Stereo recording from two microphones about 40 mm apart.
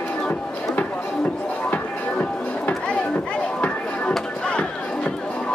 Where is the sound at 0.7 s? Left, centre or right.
Left.